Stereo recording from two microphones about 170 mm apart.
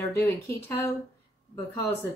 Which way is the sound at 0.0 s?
15° left (ahead or behind).